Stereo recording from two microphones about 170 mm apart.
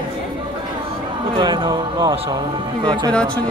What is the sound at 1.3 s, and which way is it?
Speech, 30° right (ahead or behind).